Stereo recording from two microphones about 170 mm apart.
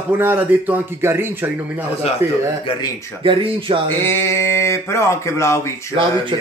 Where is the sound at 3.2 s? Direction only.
30° right (ahead or behind).